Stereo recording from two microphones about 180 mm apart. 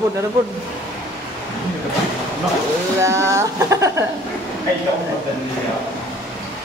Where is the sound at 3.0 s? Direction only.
15° right (ahead or behind).